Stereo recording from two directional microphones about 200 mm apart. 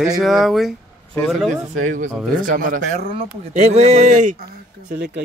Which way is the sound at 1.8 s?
40° right (ahead or behind).